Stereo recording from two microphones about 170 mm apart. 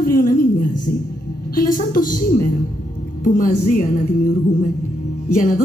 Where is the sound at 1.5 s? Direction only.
55° left (ahead or behind).